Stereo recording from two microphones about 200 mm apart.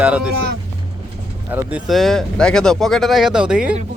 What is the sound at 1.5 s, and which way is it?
Speech, 5° right (ahead or behind).